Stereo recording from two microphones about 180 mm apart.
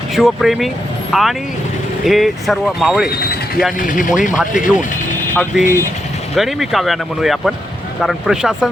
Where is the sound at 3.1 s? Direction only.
60° left (ahead or behind).